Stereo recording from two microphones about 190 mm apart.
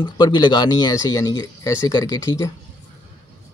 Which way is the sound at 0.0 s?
20° left (ahead or behind).